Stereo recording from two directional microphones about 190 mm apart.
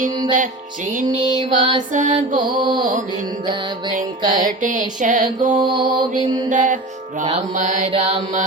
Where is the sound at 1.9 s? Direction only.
40° right (ahead or behind).